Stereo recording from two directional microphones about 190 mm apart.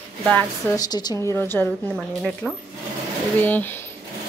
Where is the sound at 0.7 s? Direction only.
20° left (ahead or behind).